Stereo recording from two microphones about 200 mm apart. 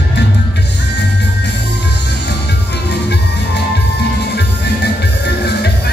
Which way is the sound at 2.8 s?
55° left (ahead or behind).